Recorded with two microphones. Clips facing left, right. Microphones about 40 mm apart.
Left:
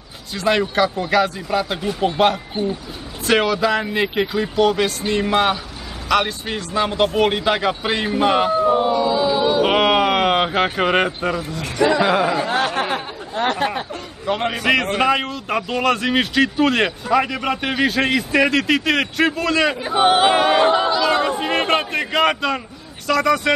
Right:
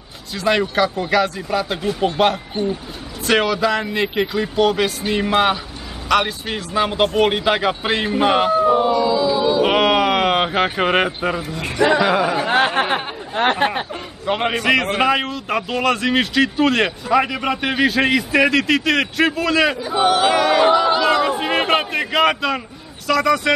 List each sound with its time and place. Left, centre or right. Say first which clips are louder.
0.3 s a man's voice: even; centre
8.8 s a sound: right 1 dB; centre
9.6 s speech: even; centre
12.0 s a man's voice: even; centre
12.4 s chatter: right 3 dB; right
14.2 s a man's voice: right 1 dB; centre
14.5 s a man's voice: right 1 dB; centre
19.9 s choir: left 4 dB; left
21.0 s a sound: right 1 dB; centre
23.0 s a man's voice: right 1 dB; centre